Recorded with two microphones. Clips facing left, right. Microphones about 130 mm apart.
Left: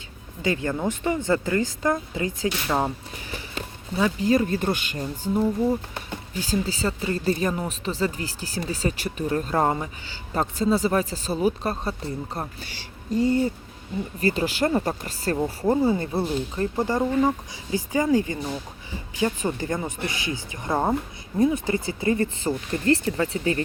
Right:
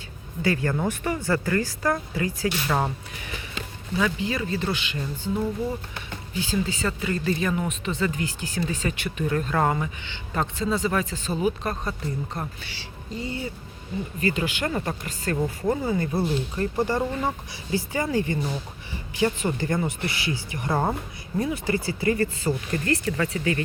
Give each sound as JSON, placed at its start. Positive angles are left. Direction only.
{"t": 0.4, "sound": "speech", "side_deg": 20}
{"t": 2.6, "sound": "speech", "side_deg": 10}
{"t": 3.9, "sound": "speech", "side_deg": 35}
{"t": 5.3, "sound": "speech", "side_deg": 20}
{"t": 6.3, "sound": "speech", "side_deg": 40}
{"t": 16.6, "sound": "speech", "side_deg": 15}